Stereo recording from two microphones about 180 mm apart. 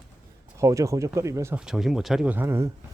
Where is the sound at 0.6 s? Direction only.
15° right (ahead or behind).